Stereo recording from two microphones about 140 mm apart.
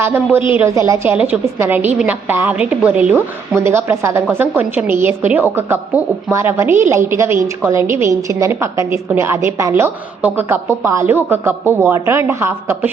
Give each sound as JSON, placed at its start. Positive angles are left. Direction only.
{"t": 0.0, "sound": "a woman's voice", "side_deg": -15}